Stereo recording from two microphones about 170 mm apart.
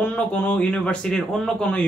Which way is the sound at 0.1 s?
10° left (ahead or behind).